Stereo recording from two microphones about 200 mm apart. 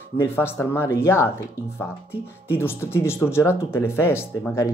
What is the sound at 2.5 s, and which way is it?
Speech, 10° left (ahead or behind).